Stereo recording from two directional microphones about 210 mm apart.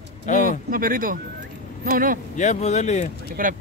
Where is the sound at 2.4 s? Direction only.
35° left (ahead or behind).